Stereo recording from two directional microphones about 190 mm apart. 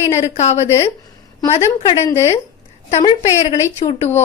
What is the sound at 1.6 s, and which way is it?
Speech, 20° left (ahead or behind).